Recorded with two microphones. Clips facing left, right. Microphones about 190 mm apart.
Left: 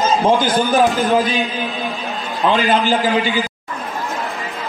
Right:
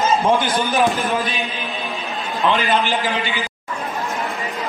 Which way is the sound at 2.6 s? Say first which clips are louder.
Left 4 dB; 35° left (ahead or behind).